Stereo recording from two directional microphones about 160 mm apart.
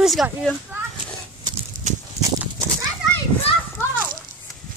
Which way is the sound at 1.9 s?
50° right (ahead or behind).